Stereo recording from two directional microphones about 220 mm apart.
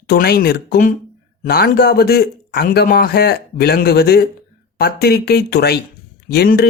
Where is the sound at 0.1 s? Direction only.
45° left (ahead or behind).